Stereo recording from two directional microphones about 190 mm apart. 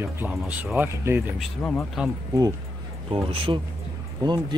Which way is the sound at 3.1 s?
30° right (ahead or behind).